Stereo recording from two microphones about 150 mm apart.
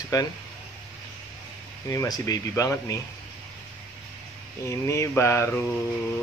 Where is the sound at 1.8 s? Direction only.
20° left (ahead or behind).